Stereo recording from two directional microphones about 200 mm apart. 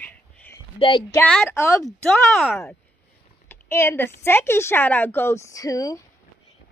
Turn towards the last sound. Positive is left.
turn(degrees=15)  # may be behind; listen again after turning